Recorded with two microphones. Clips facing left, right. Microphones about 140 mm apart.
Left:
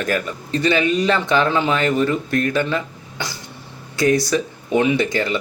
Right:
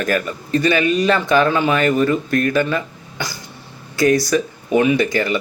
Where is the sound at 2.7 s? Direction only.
20° left (ahead or behind).